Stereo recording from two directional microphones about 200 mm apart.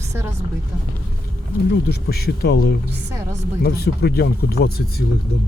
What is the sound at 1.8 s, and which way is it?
Speech, 50° left (ahead or behind).